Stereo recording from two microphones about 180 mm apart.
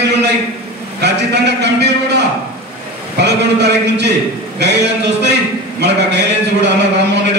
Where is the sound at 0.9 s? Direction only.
70° right (ahead or behind).